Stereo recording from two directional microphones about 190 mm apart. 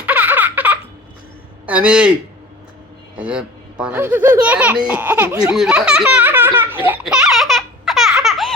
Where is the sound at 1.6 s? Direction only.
5° right (ahead or behind).